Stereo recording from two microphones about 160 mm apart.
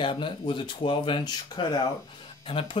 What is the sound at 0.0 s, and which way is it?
Speech, 30° left (ahead or behind).